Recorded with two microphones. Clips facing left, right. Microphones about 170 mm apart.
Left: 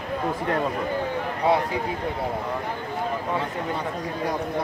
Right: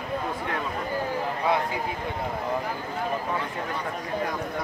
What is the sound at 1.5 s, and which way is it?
Speech, 35° left (ahead or behind).